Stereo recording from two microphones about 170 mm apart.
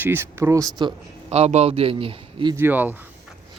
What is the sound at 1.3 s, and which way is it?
A man's voice, 40° right (ahead or behind).